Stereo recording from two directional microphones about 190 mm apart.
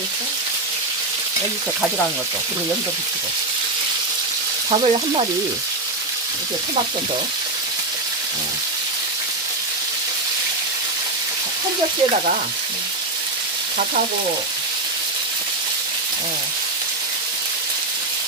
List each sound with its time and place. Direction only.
4.7 s frying: 30° right (ahead or behind)